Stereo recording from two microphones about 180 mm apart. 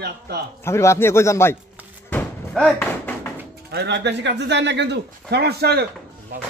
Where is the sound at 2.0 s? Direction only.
10° left (ahead or behind).